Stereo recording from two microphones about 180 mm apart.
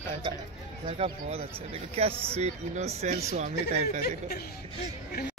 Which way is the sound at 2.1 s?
15° right (ahead or behind).